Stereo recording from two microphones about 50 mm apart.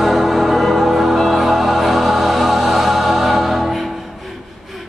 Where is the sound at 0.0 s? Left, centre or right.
Centre.